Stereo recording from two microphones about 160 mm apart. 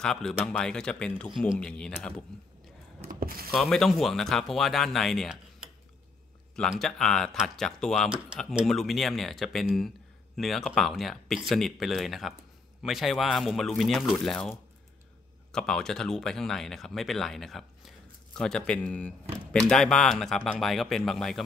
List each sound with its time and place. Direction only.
0.0 s speech: 5° left (ahead or behind)
3.1 s speech: 65° right (ahead or behind)
3.5 s speech: centre (ahead or behind)